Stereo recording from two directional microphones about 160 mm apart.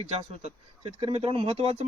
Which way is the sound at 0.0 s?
35° right (ahead or behind).